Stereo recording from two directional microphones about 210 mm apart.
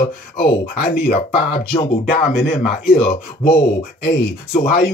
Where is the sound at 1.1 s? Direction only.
30° left (ahead or behind).